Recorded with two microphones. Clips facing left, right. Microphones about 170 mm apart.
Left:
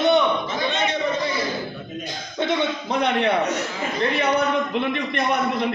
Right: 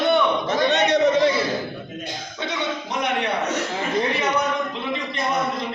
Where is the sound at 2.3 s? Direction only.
50° left (ahead or behind).